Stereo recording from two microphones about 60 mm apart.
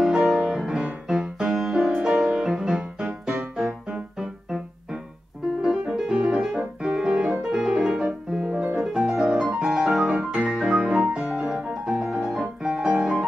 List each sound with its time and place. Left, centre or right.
0.0 s music: centre
3.0 s music: centre
3.5 s music: centre
5.6 s music: centre
7.0 s piano: centre
8.7 s music: centre
9.6 s piano: centre
9.8 s music: centre
11.4 s piano: centre